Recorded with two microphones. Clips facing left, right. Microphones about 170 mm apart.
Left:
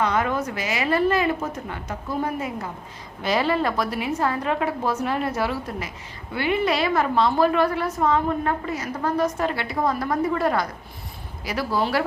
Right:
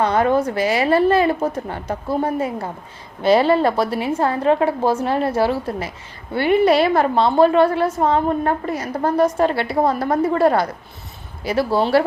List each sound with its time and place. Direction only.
0.0 s a woman's voice: 30° right (ahead or behind)